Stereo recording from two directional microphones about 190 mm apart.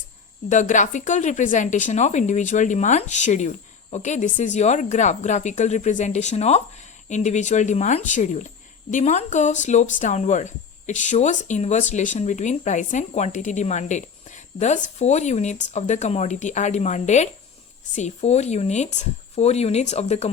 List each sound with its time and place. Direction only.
0.4 s speech: 40° left (ahead or behind)